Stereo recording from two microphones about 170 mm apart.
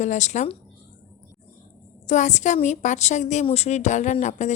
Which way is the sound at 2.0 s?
45° left (ahead or behind).